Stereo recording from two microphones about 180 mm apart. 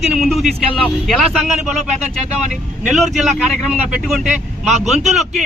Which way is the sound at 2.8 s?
Centre (ahead or behind).